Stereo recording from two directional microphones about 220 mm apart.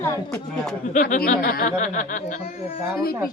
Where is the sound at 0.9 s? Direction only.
40° left (ahead or behind).